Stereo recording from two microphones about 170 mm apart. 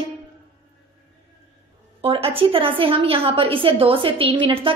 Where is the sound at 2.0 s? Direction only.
35° right (ahead or behind).